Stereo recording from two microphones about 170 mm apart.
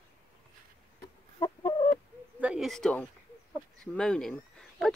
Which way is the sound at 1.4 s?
25° left (ahead or behind).